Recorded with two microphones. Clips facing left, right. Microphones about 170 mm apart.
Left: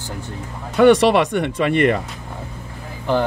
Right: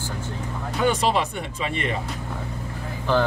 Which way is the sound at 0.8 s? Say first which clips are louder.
Left 10 dB; 70° left (ahead or behind).